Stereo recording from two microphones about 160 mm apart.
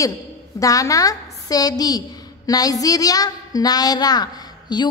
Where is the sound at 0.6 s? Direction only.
20° left (ahead or behind).